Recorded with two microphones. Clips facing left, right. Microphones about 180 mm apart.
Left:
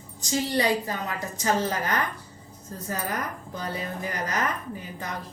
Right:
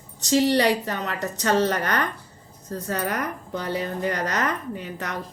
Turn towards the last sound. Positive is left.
turn(degrees=-75)  # may be behind; listen again after turning